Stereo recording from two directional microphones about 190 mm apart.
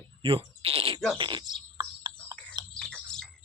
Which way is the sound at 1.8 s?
25° right (ahead or behind).